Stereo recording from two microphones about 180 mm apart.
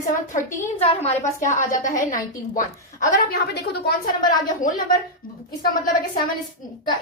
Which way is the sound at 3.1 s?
60° left (ahead or behind).